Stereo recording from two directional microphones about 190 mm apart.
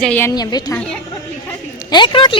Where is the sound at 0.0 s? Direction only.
10° left (ahead or behind).